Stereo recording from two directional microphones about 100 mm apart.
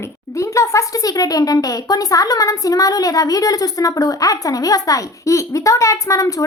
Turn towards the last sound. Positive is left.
turn(degrees=30)  # may be behind; listen again after turning